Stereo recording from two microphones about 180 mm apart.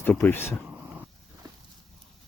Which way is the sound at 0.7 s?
10° right (ahead or behind).